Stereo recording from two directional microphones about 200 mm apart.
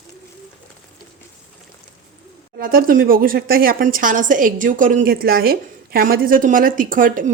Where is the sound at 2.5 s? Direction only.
45° right (ahead or behind).